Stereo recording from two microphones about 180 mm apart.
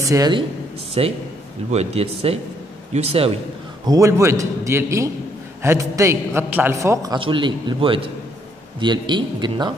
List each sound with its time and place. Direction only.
0.0 s speech: 20° right (ahead or behind); by 3.3 s 35° right (ahead or behind)
3.8 s a man's voice: 20° right (ahead or behind)